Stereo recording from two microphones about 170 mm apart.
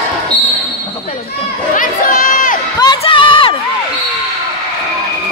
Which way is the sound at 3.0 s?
30° left (ahead or behind).